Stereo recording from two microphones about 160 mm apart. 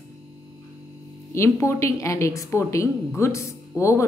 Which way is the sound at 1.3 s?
20° left (ahead or behind).